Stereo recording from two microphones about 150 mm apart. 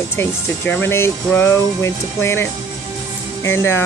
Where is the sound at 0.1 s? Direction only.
15° left (ahead or behind).